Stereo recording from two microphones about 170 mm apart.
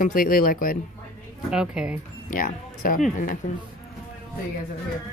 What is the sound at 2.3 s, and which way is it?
Speech, 55° left (ahead or behind).